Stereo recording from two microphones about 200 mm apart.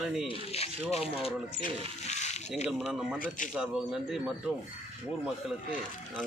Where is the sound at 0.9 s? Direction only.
30° left (ahead or behind).